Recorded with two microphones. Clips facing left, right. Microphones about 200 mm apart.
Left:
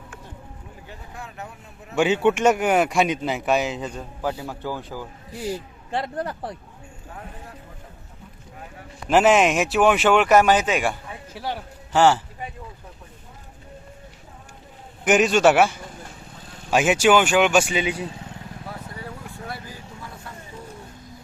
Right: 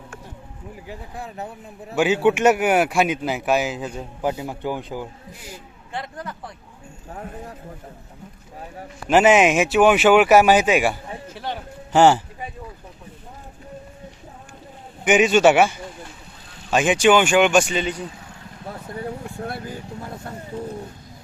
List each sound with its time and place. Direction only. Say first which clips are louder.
1.1 s speech: right 4 dB; 35° right (ahead or behind)
2.0 s speech: right 1 dB; 5° right (ahead or behind)
4.2 s speech: right 3 dB; 20° right (ahead or behind)
5.9 s speech: left 5 dB; 35° left (ahead or behind)
9.0 s speech: right 2 dB; centre (ahead or behind)
11.3 s a man's voice: left 1 dB; 10° left (ahead or behind)
11.9 s speech: right 3 dB; 15° right (ahead or behind)
15.0 s speech: right 2 dB; centre (ahead or behind)
19.5 s vehicle: right 5 dB; 55° right (ahead or behind)